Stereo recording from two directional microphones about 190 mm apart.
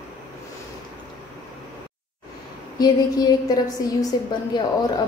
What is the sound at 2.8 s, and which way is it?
A woman's voice, 20° left (ahead or behind).